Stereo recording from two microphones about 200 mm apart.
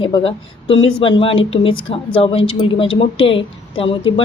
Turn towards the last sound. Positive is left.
turn(degrees=30)  # may be behind; listen again after turning